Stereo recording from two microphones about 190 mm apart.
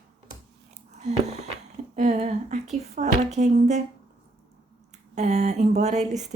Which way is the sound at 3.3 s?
35° right (ahead or behind).